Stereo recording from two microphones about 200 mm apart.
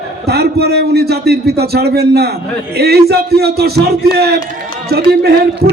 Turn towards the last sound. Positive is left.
turn(degrees=-55)  # may be behind; listen again after turning